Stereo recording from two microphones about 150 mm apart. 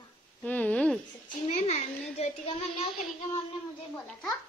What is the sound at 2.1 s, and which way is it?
Speech, 40° left (ahead or behind).